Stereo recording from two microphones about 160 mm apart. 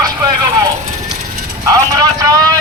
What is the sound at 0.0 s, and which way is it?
Vehicle, 20° right (ahead or behind).